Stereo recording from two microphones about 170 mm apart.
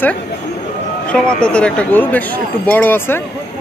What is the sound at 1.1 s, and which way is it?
Speech, 5° left (ahead or behind).